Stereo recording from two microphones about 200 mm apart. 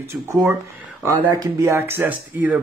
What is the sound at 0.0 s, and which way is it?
Speech, 15° right (ahead or behind).